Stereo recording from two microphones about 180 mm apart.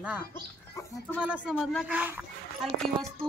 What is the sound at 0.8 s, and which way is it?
Speech, 15° left (ahead or behind).